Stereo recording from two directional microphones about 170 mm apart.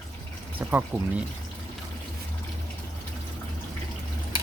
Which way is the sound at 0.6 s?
10° right (ahead or behind).